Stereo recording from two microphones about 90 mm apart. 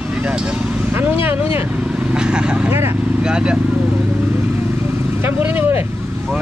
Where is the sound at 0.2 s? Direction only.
15° right (ahead or behind).